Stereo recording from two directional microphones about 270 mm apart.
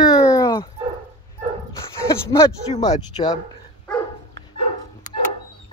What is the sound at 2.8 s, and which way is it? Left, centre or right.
Speech, centre.